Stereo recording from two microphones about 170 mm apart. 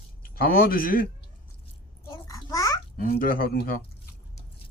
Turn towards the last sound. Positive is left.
turn(degrees=60)  # may be behind; listen again after turning